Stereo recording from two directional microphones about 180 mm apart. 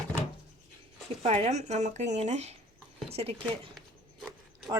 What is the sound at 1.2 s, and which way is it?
Speech, 35° right (ahead or behind).